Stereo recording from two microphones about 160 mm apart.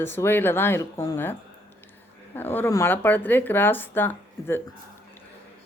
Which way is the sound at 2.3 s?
10° left (ahead or behind).